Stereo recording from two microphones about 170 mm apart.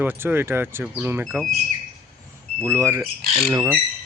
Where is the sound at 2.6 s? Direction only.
15° right (ahead or behind).